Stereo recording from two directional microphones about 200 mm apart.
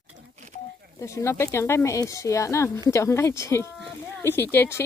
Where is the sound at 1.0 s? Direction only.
15° left (ahead or behind).